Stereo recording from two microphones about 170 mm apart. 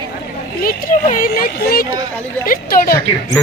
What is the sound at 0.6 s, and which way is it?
Speech, 60° left (ahead or behind).